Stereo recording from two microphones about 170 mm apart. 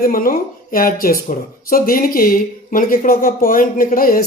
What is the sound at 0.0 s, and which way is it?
Speech, 60° left (ahead or behind).